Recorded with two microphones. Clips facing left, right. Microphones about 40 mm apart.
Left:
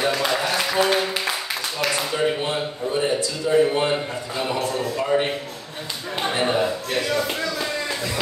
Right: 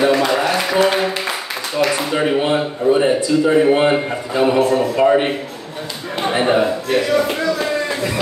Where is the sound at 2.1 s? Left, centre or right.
Right.